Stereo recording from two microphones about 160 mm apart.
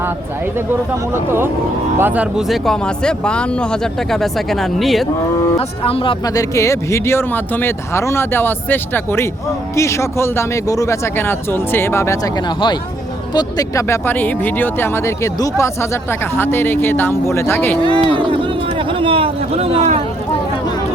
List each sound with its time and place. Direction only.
1.1 s speech: 15° right (ahead or behind)
5.5 s speech: 35° left (ahead or behind); by 17.7 s 15° left (ahead or behind)
17.8 s a sound: 35° right (ahead or behind)